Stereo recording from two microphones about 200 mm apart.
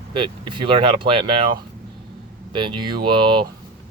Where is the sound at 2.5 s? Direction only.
25° right (ahead or behind).